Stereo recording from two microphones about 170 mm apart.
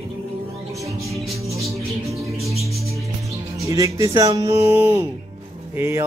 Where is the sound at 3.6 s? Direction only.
20° right (ahead or behind).